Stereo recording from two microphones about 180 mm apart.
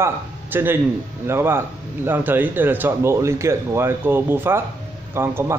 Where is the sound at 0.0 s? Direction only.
10° right (ahead or behind).